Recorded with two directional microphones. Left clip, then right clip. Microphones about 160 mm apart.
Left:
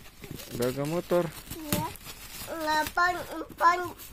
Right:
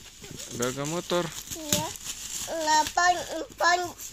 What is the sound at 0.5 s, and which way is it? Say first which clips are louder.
Speech: left 1 dB; 5° left (ahead or behind).